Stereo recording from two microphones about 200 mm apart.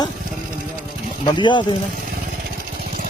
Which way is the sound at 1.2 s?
25° left (ahead or behind).